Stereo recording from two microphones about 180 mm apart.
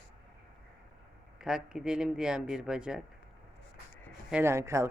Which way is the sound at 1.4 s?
5° right (ahead or behind).